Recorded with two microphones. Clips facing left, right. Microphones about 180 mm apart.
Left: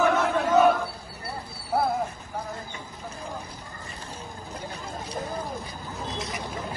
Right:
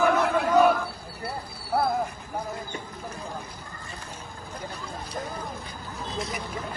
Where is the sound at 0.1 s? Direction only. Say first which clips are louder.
Even; centre (ahead or behind).